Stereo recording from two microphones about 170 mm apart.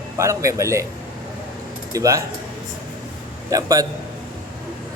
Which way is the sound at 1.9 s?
20° right (ahead or behind).